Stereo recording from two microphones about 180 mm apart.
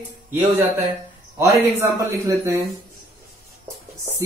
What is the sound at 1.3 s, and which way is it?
A man's voice, 15° right (ahead or behind).